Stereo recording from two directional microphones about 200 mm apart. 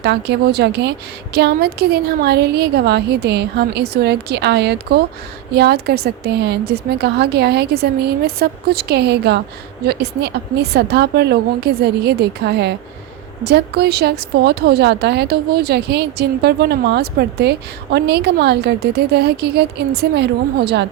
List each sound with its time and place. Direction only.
0.0 s a woman's voice: 55° right (ahead or behind)